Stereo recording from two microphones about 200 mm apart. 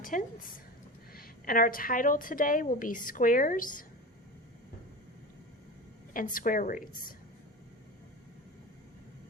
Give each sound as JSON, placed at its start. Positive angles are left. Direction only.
{"t": 0.0, "sound": "a woman's voice", "side_deg": 40}
{"t": 6.1, "sound": "a woman's voice", "side_deg": 45}